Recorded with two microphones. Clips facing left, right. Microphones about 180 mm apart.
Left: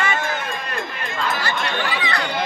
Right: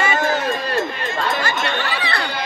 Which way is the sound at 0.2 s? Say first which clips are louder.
Right 6 dB; 35° right (ahead or behind).